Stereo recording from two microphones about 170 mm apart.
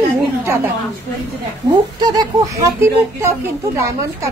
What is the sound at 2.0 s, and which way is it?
Speech, 20° right (ahead or behind).